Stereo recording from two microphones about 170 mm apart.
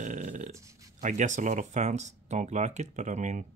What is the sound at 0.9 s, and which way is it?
Speech, 45° right (ahead or behind).